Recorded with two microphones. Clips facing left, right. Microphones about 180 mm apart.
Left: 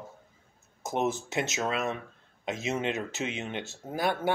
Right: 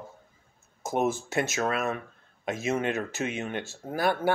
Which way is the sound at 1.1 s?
20° left (ahead or behind).